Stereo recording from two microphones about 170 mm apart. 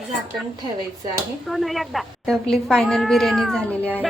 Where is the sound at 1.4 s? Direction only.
Centre (ahead or behind).